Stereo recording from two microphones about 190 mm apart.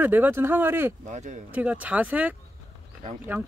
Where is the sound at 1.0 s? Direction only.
40° right (ahead or behind).